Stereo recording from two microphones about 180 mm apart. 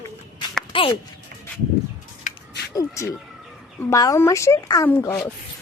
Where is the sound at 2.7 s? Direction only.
20° left (ahead or behind).